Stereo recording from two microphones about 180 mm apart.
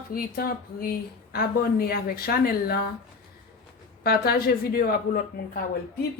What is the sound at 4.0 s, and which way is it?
A woman's voice, 60° left (ahead or behind).